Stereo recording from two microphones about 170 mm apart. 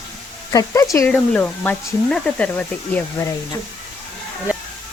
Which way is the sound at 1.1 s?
5° left (ahead or behind).